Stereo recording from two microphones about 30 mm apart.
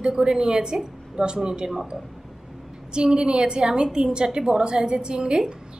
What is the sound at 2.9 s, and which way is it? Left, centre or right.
A woman's voice, right.